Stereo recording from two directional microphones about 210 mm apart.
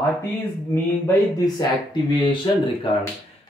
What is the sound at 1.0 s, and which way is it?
Speech, 20° left (ahead or behind).